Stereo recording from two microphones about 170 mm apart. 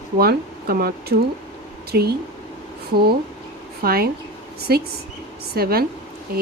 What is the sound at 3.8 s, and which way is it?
Speech, 60° right (ahead or behind).